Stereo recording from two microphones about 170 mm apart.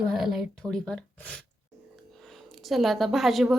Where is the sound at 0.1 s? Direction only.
Centre (ahead or behind).